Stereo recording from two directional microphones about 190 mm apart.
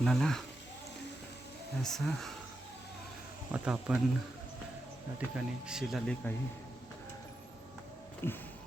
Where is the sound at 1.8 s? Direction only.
Centre (ahead or behind).